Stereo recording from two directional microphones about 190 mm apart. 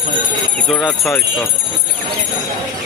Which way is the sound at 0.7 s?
5° left (ahead or behind).